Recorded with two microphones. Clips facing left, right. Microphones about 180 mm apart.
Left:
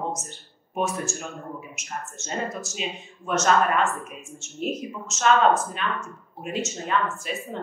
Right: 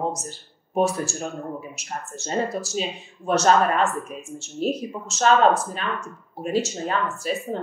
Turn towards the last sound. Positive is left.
turn(degrees=-35)  # may be behind; listen again after turning